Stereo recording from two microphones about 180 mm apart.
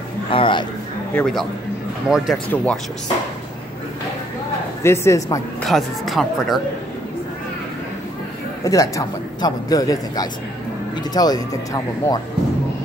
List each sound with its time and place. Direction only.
0.3 s speech: 30° left (ahead or behind)
1.1 s a woman's voice: centre (ahead or behind)
4.8 s a woman's voice: 15° left (ahead or behind)
5.6 s speech: centre (ahead or behind)
8.6 s speech: 20° left (ahead or behind)